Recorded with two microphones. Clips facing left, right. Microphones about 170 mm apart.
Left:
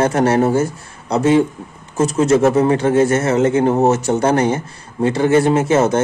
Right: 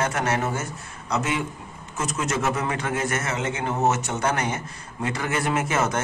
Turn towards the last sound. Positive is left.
turn(degrees=30)  # may be behind; listen again after turning